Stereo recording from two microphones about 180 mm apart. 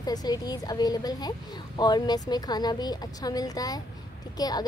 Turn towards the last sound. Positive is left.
turn(degrees=20)  # may be behind; listen again after turning